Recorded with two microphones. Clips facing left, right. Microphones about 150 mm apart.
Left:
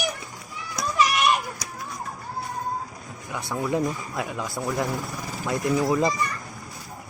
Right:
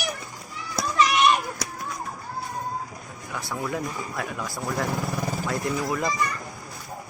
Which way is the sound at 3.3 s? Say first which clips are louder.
Left 3 dB; 20° left (ahead or behind).